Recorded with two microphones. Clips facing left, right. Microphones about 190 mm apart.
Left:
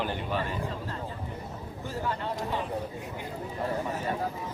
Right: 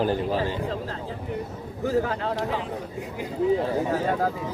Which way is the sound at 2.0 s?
90° right.